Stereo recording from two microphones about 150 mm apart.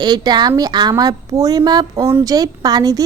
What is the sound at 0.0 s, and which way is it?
A woman's voice, 30° right (ahead or behind).